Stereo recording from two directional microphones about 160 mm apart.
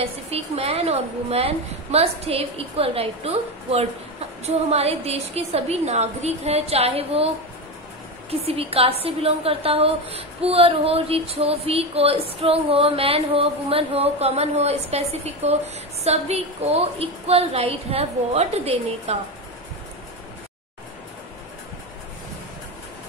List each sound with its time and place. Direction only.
0.0 s a woman's voice: 40° right (ahead or behind)
8.3 s a woman's voice: 35° right (ahead or behind)